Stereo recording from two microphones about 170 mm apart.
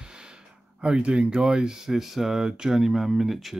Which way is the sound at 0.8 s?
5° right (ahead or behind).